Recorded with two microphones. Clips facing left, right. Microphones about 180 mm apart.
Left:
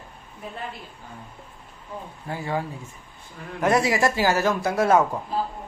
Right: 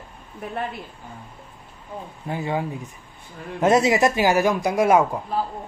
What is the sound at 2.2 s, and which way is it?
A man's voice, 20° right (ahead or behind).